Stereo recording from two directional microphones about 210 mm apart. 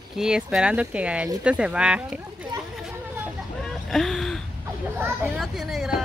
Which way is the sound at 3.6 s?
Centre (ahead or behind).